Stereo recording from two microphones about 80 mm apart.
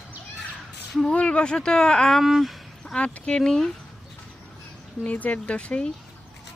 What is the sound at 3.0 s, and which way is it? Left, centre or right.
Speech, centre.